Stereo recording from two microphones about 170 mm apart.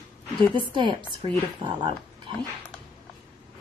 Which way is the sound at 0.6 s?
30° right (ahead or behind).